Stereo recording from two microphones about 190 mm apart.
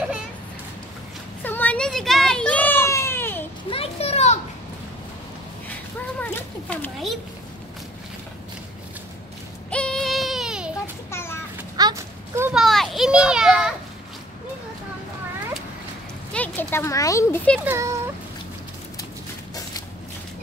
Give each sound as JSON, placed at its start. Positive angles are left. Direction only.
{"t": 1.4, "sound": "a sound", "side_deg": 10}
{"t": 3.7, "sound": "a sound", "side_deg": 30}
{"t": 6.2, "sound": "speech", "side_deg": 10}
{"t": 9.7, "sound": "child singing", "side_deg": 5}
{"t": 11.1, "sound": "speech", "side_deg": 15}
{"t": 11.7, "sound": "a sound", "side_deg": -20}
{"t": 12.5, "sound": "children playing", "side_deg": 0}
{"t": 16.3, "sound": "a child's voice", "side_deg": 10}
{"t": 17.6, "sound": "a child's voice", "side_deg": -15}